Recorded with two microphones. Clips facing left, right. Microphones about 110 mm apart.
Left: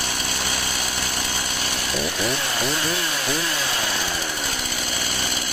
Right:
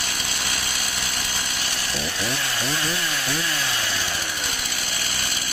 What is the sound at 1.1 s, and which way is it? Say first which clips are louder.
Chainsaw: left 3 dB; 35° left (ahead or behind).